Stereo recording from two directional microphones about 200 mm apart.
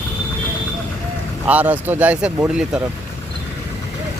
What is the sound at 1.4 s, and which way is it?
Speech, 10° right (ahead or behind).